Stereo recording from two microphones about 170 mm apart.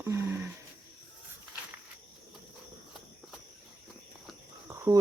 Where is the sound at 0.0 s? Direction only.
15° right (ahead or behind).